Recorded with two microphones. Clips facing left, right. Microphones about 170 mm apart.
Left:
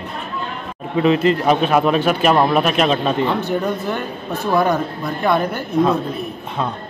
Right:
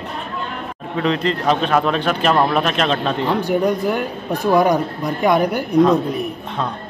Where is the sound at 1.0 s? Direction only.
5° left (ahead or behind).